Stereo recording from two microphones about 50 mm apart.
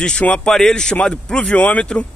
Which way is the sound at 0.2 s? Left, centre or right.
Left.